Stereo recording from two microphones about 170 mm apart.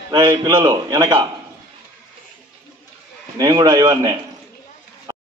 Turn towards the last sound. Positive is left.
turn(degrees=-20)  # may be behind; listen again after turning